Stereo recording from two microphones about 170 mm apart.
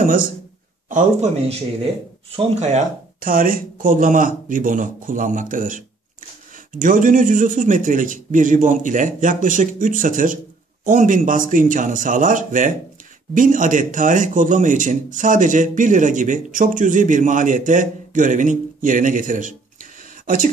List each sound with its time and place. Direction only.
0.8 s speech: 45° right (ahead or behind)
3.3 s speech: 55° right (ahead or behind)